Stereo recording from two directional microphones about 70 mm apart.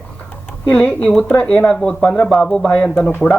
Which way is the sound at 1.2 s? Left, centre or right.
Left.